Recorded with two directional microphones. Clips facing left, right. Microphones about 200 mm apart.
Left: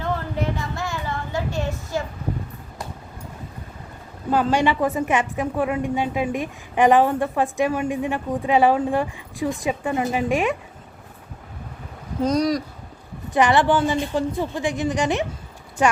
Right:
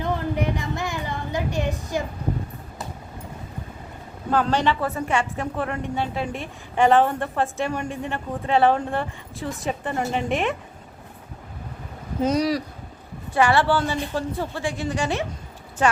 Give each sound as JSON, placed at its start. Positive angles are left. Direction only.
{"t": 0.0, "sound": "a sound", "side_deg": -15}
{"t": 4.3, "sound": "a woman's voice", "side_deg": 10}
{"t": 12.2, "sound": "speech", "side_deg": -5}
{"t": 13.3, "sound": "a woman's voice", "side_deg": 20}